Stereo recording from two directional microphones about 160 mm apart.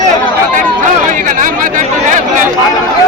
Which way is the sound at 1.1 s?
55° right (ahead or behind).